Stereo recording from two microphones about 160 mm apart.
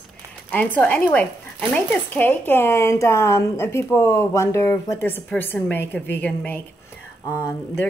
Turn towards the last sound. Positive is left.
turn(degrees=15)  # may be behind; listen again after turning